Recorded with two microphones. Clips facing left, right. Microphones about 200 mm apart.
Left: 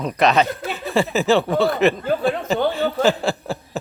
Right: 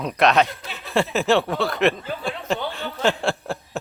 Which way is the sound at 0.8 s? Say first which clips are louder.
Left 2 dB; centre (ahead or behind).